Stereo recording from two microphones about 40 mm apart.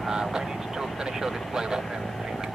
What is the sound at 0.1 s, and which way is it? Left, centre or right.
Vehicle, centre.